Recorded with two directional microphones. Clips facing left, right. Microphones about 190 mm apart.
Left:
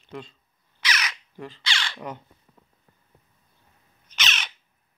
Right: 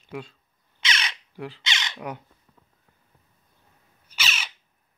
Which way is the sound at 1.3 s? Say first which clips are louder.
Right 1 dB; 15° right (ahead or behind).